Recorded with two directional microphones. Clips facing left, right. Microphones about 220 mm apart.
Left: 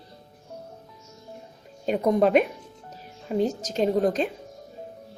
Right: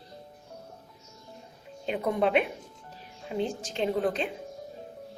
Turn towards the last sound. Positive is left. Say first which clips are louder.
# left 5 dB
turn(degrees=40)  # may be behind; listen again after turning